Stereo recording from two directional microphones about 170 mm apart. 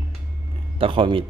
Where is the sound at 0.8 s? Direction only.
30° right (ahead or behind).